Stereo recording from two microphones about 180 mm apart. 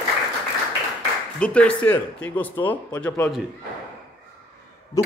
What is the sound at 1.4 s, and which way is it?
Speech, 5° left (ahead or behind).